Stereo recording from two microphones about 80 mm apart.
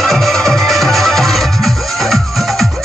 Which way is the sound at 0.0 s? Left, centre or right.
Centre.